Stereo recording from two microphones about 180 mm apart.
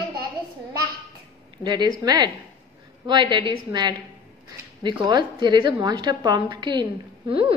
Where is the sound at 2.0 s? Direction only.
20° right (ahead or behind).